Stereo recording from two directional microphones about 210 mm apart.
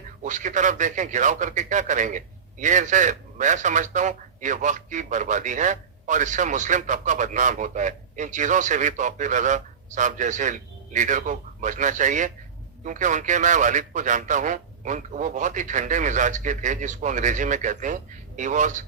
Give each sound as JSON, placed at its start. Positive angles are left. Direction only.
{"t": 0.2, "sound": "a man's voice", "side_deg": -35}